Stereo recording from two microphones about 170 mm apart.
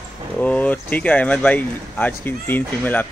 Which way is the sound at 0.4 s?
10° left (ahead or behind).